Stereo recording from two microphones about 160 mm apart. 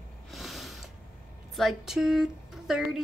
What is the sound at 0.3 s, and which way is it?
Mechanisms, centre (ahead or behind).